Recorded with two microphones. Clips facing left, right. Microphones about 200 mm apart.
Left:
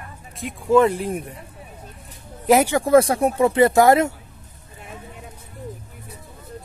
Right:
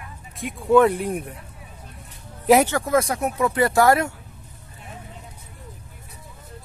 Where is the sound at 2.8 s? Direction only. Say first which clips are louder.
Left 6 dB; 30° left (ahead or behind).